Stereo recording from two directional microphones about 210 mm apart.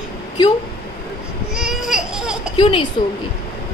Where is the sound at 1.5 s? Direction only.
Centre (ahead or behind).